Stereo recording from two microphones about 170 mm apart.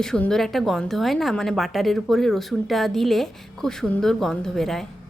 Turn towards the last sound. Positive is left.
turn(degrees=0)  # may be behind; listen again after turning